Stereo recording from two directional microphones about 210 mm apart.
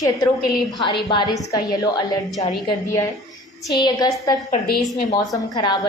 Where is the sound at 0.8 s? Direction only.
25° left (ahead or behind).